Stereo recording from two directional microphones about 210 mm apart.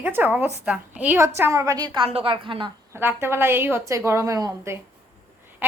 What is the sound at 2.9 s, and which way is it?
A woman's voice, 10° right (ahead or behind).